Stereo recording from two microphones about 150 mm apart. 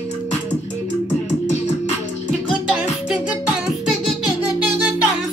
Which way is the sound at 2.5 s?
5° right (ahead or behind).